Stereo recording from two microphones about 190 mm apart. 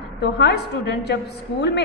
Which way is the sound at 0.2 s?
60° left (ahead or behind).